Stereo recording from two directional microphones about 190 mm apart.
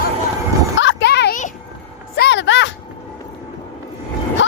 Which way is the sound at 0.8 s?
70° left (ahead or behind).